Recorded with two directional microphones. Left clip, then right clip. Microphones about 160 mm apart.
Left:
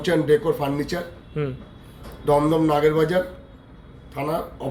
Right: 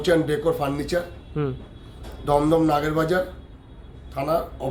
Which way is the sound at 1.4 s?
30° right (ahead or behind).